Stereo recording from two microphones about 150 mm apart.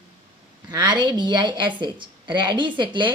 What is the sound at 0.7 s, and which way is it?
A woman's voice, 30° right (ahead or behind).